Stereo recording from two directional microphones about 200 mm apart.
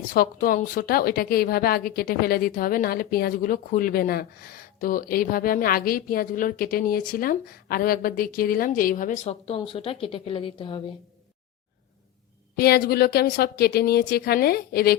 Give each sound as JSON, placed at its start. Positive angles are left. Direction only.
{"t": 0.1, "sound": "a woman's voice", "side_deg": 45}
{"t": 12.5, "sound": "a woman's voice", "side_deg": 50}